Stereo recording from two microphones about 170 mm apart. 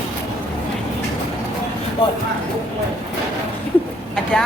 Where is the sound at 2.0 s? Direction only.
30° left (ahead or behind).